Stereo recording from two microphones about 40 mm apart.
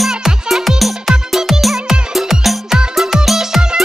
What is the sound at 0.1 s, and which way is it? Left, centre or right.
Music, centre.